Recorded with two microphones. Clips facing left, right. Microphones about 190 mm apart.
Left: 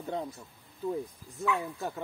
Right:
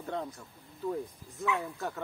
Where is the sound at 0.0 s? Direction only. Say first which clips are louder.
Left 1 dB; 15° left (ahead or behind).